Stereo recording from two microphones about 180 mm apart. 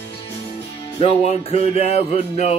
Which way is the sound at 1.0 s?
35° left (ahead or behind).